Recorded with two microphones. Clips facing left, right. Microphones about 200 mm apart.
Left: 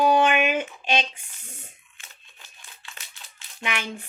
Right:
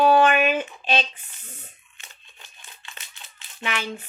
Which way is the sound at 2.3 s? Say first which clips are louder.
Right 2 dB; centre (ahead or behind).